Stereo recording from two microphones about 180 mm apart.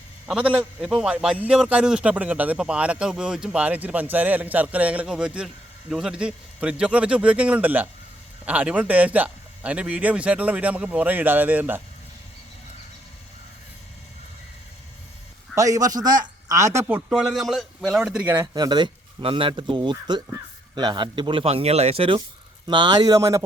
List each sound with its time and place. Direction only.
0.3 s a man's voice: 5° right (ahead or behind)
15.5 s a man's voice: 20° right (ahead or behind)
18.5 s speech: 25° right (ahead or behind)